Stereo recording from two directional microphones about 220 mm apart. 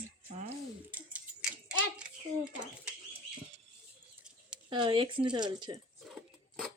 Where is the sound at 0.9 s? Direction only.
5° right (ahead or behind).